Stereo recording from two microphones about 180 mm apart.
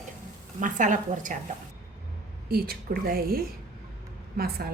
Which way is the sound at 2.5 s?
55° right (ahead or behind).